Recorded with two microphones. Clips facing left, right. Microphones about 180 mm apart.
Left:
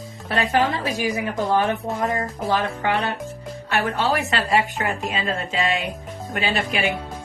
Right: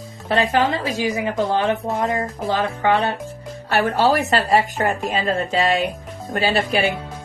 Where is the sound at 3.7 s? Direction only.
40° right (ahead or behind).